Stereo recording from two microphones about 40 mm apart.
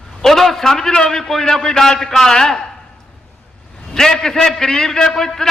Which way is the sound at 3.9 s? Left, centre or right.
Centre.